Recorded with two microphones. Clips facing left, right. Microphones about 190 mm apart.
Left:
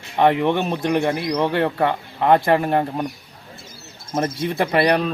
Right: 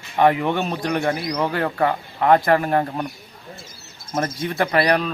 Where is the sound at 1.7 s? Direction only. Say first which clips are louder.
Even; centre (ahead or behind).